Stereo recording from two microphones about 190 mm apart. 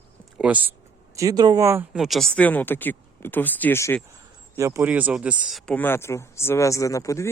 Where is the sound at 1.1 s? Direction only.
20° right (ahead or behind).